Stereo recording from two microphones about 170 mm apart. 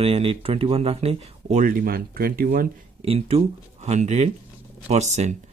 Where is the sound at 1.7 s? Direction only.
60° right (ahead or behind).